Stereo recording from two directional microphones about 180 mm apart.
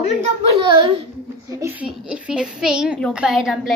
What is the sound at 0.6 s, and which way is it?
Speech, 30° right (ahead or behind).